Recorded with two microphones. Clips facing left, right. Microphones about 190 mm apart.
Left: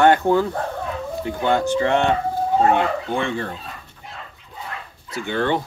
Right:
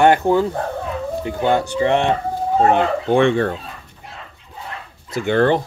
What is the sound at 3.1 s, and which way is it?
Speech, 85° right.